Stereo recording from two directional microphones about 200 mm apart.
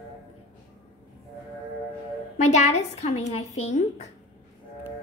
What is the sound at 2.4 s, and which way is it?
Speech, 35° left (ahead or behind).